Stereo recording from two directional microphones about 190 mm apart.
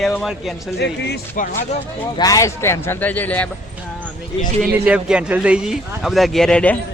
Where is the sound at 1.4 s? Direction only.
45° left (ahead or behind).